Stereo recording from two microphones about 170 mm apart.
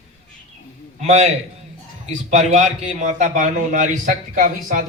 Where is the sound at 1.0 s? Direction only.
40° right (ahead or behind).